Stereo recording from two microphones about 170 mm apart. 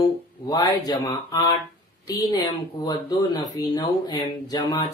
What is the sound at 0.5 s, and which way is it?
A man's voice, 20° left (ahead or behind).